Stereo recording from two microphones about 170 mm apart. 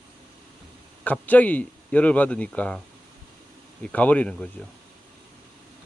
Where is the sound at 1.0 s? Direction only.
10° left (ahead or behind).